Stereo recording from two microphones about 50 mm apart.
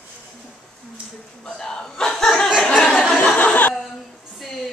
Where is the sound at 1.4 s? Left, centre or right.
Centre.